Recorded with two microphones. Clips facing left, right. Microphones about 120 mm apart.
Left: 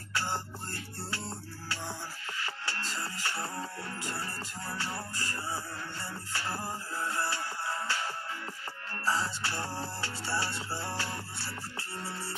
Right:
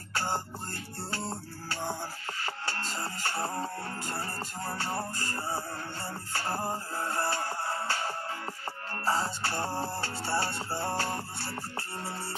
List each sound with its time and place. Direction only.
0.1 s music: 45° right (ahead or behind)